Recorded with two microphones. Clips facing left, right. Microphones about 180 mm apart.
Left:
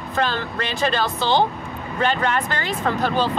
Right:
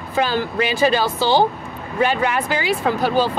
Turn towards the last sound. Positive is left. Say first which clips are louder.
# right 3 dB
turn(degrees=-5)  # may be behind; listen again after turning